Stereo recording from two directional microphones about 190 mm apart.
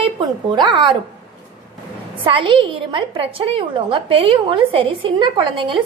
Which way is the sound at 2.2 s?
25° right (ahead or behind).